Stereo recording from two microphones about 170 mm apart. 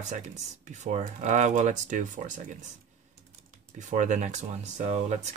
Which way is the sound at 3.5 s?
45° right (ahead or behind).